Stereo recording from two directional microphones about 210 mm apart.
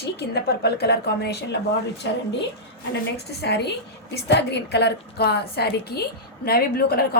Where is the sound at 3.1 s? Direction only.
50° left (ahead or behind).